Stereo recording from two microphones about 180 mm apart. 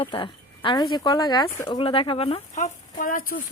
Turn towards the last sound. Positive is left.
turn(degrees=50)  # may be behind; listen again after turning